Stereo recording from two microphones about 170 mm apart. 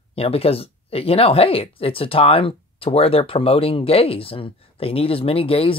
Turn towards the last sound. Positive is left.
turn(degrees=35)  # may be behind; listen again after turning